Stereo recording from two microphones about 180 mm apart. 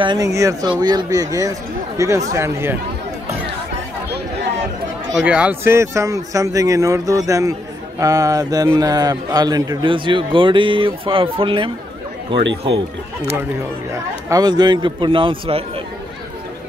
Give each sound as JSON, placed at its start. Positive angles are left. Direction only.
{"t": 0.0, "sound": "speech", "side_deg": -20}
{"t": 5.2, "sound": "a man's voice", "side_deg": -10}